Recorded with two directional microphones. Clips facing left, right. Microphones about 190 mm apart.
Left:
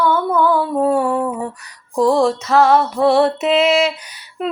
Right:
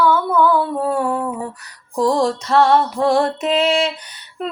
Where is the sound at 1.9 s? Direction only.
5° left (ahead or behind).